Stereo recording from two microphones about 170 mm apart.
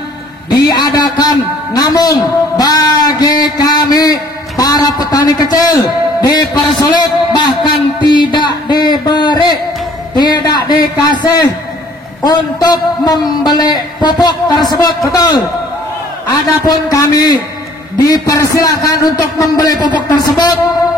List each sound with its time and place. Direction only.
0.5 s a man's voice: 25° left (ahead or behind)
8.0 s a sound: 25° left (ahead or behind)
10.1 s a man's voice: 25° left (ahead or behind)